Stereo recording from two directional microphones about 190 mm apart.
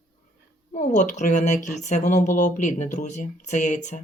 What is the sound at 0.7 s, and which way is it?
Speech, 40° left (ahead or behind).